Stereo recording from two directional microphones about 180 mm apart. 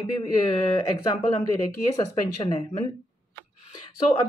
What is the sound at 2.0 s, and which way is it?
Speech, 25° left (ahead or behind).